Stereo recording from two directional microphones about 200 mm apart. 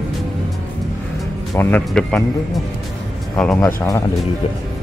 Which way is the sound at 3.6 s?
15° left (ahead or behind).